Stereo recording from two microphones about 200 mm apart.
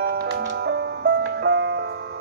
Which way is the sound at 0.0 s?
50° right (ahead or behind).